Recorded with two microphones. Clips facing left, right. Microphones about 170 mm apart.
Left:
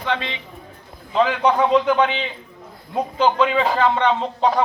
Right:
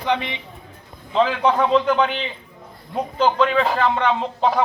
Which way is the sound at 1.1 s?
Centre (ahead or behind).